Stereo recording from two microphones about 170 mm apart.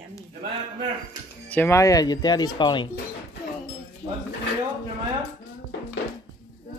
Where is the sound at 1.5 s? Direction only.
15° left (ahead or behind).